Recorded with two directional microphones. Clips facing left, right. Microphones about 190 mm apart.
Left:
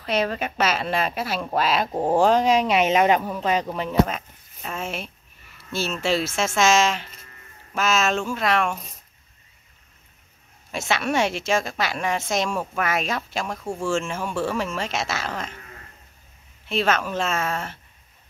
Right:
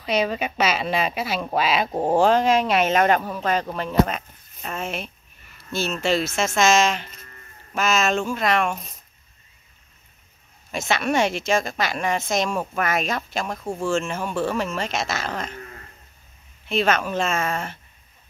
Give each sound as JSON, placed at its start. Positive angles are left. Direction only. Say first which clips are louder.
{"t": 0.0, "sound": "a woman's voice", "louder": "right 1 dB", "side_deg": -5}
{"t": 10.7, "sound": "a woman's voice", "louder": "right 1 dB", "side_deg": 5}
{"t": 14.3, "sound": "speech", "louder": "right 1 dB", "side_deg": -15}
{"t": 14.8, "sound": "speech", "louder": "right 1 dB", "side_deg": 5}
{"t": 16.6, "sound": "a woman's voice", "louder": "right 1 dB", "side_deg": 5}